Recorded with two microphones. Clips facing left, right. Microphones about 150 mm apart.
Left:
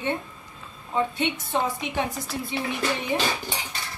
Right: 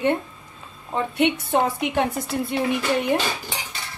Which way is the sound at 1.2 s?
60° right (ahead or behind).